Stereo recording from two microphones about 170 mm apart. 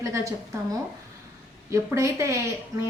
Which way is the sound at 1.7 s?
15° right (ahead or behind).